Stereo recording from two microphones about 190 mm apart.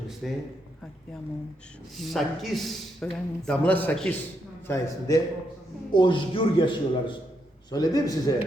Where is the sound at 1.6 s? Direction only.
5° left (ahead or behind).